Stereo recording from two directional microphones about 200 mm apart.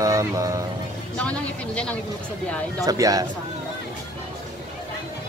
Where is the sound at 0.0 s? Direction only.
15° right (ahead or behind).